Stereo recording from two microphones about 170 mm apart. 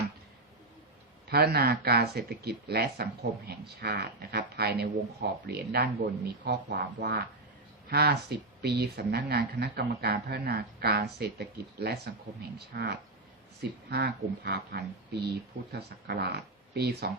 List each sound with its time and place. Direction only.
1.3 s speech: 65° right (ahead or behind)